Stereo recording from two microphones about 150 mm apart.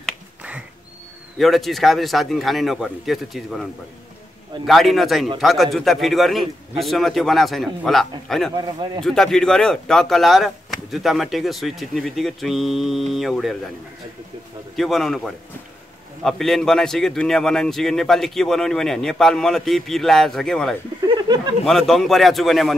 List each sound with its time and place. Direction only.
0.4 s a sound: 10° right (ahead or behind)
1.4 s speech: centre (ahead or behind)
4.6 s speech: centre (ahead or behind)
8.5 s speech: 30° right (ahead or behind)
9.0 s speech: 5° left (ahead or behind)
14.8 s speech: centre (ahead or behind)
21.1 s a sound: 30° right (ahead or behind)
21.6 s speech: centre (ahead or behind)